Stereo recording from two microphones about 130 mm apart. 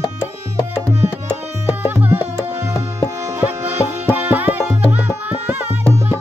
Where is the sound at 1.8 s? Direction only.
15° right (ahead or behind).